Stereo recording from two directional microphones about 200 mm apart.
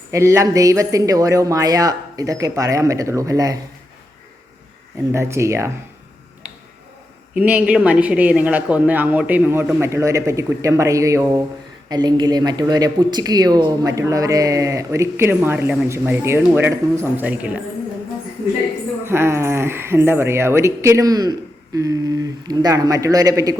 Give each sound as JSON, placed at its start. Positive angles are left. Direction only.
{"t": 0.1, "sound": "speech", "side_deg": -15}
{"t": 5.1, "sound": "speech", "side_deg": -15}
{"t": 7.3, "sound": "speech", "side_deg": -5}
{"t": 19.0, "sound": "speech", "side_deg": -10}